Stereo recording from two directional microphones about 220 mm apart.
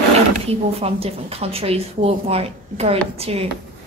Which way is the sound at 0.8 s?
25° right (ahead or behind).